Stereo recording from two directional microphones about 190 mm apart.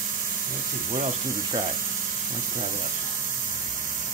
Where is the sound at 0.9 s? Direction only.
35° right (ahead or behind).